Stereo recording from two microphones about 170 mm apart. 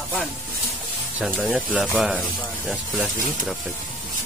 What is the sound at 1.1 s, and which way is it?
Speech, 5° right (ahead or behind).